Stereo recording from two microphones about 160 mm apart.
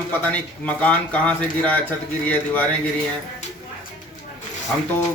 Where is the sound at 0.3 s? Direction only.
10° left (ahead or behind).